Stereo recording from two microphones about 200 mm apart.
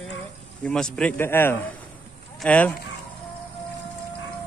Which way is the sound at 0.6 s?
5° left (ahead or behind).